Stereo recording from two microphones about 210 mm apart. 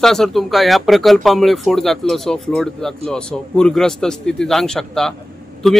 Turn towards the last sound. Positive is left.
turn(degrees=0)  # may be behind; listen again after turning